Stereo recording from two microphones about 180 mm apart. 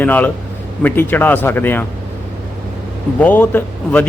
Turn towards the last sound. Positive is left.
turn(degrees=10)  # may be behind; listen again after turning